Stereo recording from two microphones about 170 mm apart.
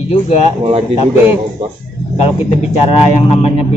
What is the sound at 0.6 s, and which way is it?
Speech, 30° right (ahead or behind).